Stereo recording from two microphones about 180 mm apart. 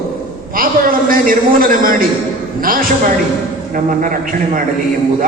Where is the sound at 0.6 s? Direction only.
50° right (ahead or behind).